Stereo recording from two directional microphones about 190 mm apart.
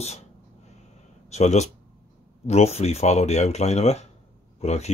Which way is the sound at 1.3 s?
35° left (ahead or behind).